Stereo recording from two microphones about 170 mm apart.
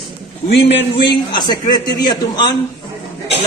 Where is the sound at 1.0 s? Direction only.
25° left (ahead or behind).